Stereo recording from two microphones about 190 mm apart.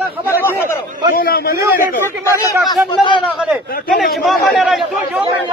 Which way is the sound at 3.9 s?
Centre (ahead or behind).